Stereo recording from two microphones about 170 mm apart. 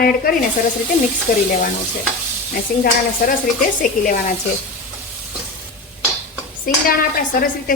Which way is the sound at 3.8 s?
50° left (ahead or behind).